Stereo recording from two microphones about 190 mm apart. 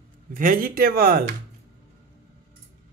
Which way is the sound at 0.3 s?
45° right (ahead or behind).